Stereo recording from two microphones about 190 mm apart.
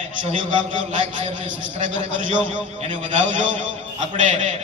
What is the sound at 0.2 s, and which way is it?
A man's voice, 25° right (ahead or behind).